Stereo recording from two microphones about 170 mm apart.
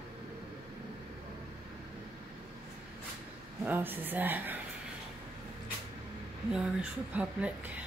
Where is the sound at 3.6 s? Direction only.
10° right (ahead or behind).